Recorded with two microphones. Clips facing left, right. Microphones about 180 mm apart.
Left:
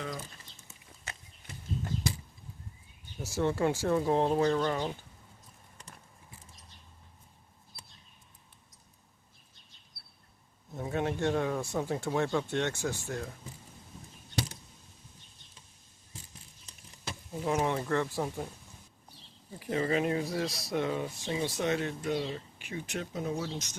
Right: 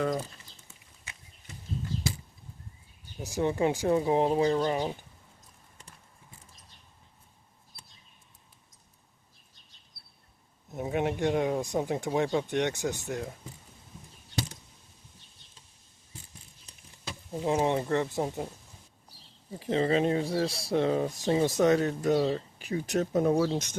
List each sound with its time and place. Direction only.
3.2 s speech: 15° right (ahead or behind)
10.7 s speech: 20° right (ahead or behind)
17.4 s speech: 25° right (ahead or behind)
19.5 s speech: 30° right (ahead or behind); by 23.6 s 55° right (ahead or behind)